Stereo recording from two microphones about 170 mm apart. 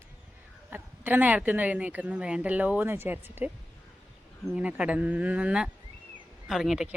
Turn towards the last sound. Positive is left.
turn(degrees=0)  # may be behind; listen again after turning